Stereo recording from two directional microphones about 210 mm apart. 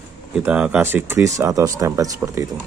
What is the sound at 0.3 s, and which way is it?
Speech, 5° right (ahead or behind).